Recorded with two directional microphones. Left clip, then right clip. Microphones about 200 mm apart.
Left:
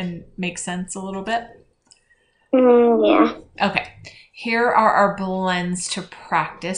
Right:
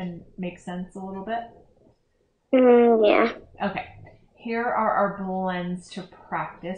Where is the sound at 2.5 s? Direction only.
25° right (ahead or behind).